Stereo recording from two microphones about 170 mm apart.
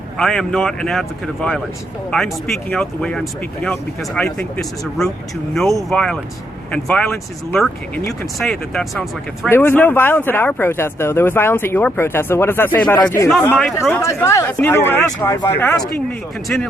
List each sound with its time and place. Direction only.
0.2 s speech: 5° left (ahead or behind)
9.5 s speech: 10° left (ahead or behind)
13.4 s speech: 5° left (ahead or behind)